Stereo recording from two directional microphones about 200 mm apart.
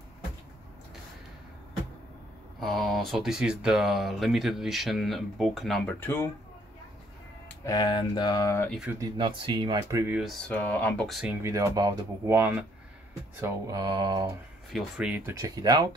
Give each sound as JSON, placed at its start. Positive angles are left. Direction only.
{"t": 2.6, "sound": "speech", "side_deg": 0}
{"t": 7.4, "sound": "speech", "side_deg": 15}
{"t": 9.0, "sound": "speech", "side_deg": -20}
{"t": 10.2, "sound": "speech", "side_deg": 5}
{"t": 11.4, "sound": "speech", "side_deg": -15}
{"t": 14.7, "sound": "speech", "side_deg": 0}